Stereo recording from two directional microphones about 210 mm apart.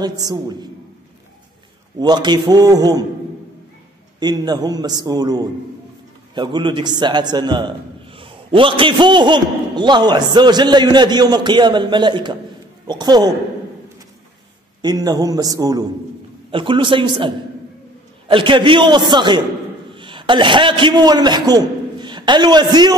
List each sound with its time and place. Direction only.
0.2 s a man's voice: 20° right (ahead or behind)
2.0 s a man's voice: 20° right (ahead or behind)
4.2 s a man's voice: 20° right (ahead or behind)
14.8 s a man's voice: 20° right (ahead or behind)
18.3 s a man's voice: 25° right (ahead or behind)